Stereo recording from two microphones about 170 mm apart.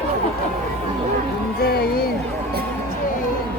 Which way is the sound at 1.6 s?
65° left (ahead or behind).